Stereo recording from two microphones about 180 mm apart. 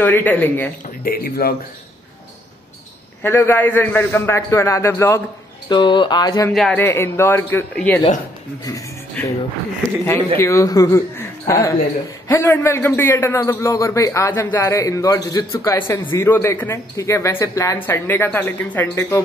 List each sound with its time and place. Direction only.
0.0 s a man's voice: 10° left (ahead or behind)
1.0 s speech: 55° left (ahead or behind)
3.2 s a man's voice: 10° left (ahead or behind)
5.7 s speech: 25° left (ahead or behind)
6.5 s a man's voice: centre (ahead or behind)
6.8 s a man's voice: 15° left (ahead or behind)
9.2 s a man's voice: 10° left (ahead or behind)